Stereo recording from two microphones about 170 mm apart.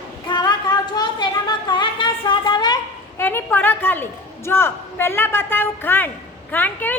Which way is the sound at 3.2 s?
15° left (ahead or behind).